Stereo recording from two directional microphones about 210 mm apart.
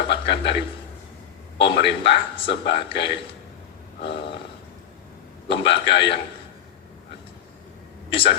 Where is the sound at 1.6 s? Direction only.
55° left (ahead or behind).